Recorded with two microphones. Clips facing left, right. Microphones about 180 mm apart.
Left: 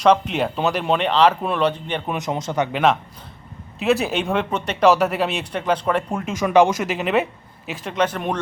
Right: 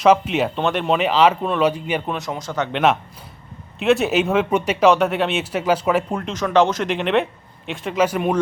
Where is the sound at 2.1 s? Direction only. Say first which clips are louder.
Left 2 dB; 20° left (ahead or behind).